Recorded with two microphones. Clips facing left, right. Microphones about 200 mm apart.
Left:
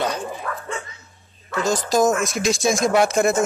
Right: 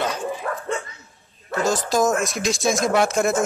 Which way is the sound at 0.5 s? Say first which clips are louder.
Right 2 dB; 30° right (ahead or behind).